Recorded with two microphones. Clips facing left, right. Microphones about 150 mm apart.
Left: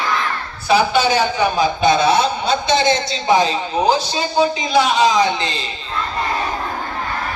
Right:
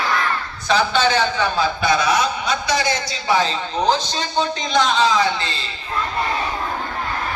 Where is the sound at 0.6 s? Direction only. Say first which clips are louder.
Left 3 dB; 10° left (ahead or behind).